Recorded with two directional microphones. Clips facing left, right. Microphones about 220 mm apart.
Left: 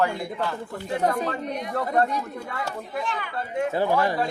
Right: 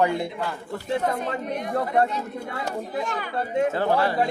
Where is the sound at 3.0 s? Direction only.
40° right (ahead or behind).